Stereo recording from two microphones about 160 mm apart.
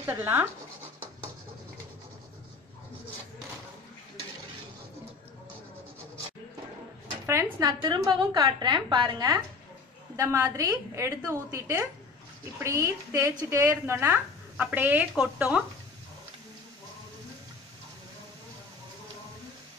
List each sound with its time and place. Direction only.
0.0 s a woman's voice: 15° right (ahead or behind)
7.6 s a woman's voice: 25° right (ahead or behind); by 15.6 s 5° right (ahead or behind)